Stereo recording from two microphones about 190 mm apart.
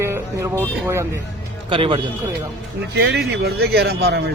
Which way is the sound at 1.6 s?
25° right (ahead or behind).